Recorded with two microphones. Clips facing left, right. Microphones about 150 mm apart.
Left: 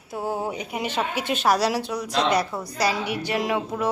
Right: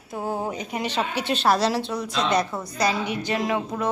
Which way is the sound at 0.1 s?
10° left (ahead or behind).